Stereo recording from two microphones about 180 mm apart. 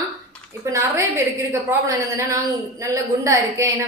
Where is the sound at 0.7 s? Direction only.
15° right (ahead or behind).